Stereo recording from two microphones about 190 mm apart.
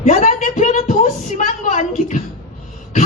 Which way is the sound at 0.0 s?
40° left (ahead or behind).